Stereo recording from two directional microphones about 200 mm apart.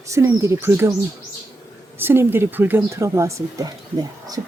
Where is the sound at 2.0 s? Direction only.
10° right (ahead or behind).